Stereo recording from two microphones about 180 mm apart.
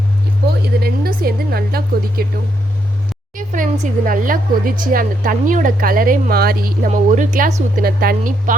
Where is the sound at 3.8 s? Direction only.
50° right (ahead or behind).